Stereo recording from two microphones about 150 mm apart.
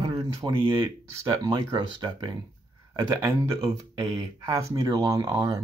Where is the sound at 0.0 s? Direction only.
30° right (ahead or behind).